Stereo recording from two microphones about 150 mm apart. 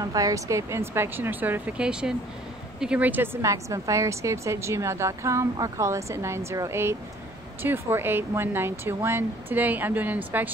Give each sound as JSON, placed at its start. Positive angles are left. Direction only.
{"t": 0.0, "sound": "a woman's voice", "side_deg": -25}